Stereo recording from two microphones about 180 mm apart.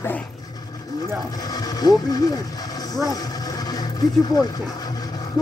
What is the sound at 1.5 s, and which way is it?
Speech, 20° left (ahead or behind).